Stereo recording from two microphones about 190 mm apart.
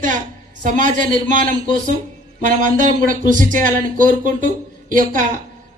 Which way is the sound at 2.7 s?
45° right (ahead or behind).